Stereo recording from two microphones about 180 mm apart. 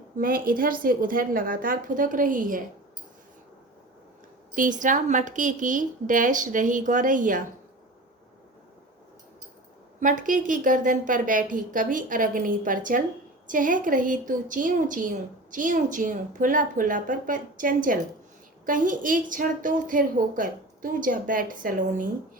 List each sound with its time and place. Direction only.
0.2 s a woman's voice: 50° right (ahead or behind)
4.5 s a woman's voice: 45° right (ahead or behind)
10.0 s a woman's voice: 45° right (ahead or behind)